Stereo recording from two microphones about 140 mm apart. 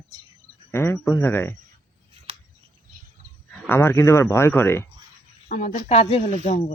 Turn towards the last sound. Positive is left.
turn(degrees=55)  # may be behind; listen again after turning